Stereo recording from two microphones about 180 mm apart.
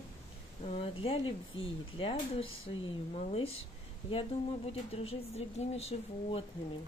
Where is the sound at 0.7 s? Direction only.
30° left (ahead or behind).